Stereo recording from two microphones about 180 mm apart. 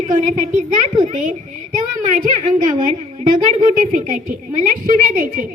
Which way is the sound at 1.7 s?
45° right (ahead or behind).